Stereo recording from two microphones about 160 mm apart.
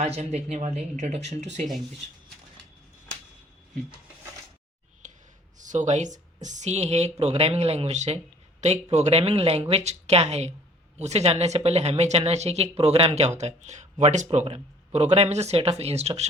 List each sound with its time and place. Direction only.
0.0 s speech: 40° right (ahead or behind)
5.0 s a sound: 50° right (ahead or behind)
5.5 s speech: 50° right (ahead or behind)